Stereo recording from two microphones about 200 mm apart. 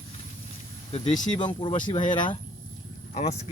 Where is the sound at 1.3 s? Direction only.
25° left (ahead or behind).